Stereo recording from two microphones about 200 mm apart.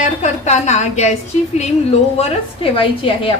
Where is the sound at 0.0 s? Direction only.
35° left (ahead or behind).